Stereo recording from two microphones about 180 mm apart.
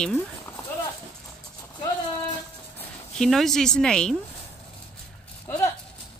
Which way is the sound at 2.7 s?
5° left (ahead or behind).